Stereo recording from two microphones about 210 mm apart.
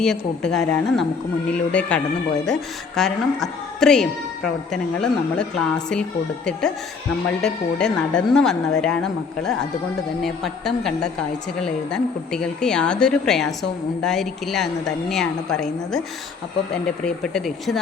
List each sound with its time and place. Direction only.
0.0 s a woman's voice: 5° left (ahead or behind)
10.2 s a woman's voice: centre (ahead or behind)